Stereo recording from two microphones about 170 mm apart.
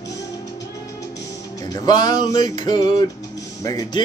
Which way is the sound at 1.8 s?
25° left (ahead or behind).